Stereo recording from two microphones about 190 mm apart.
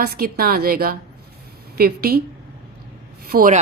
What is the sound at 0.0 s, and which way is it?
A woman's voice, 55° right (ahead or behind).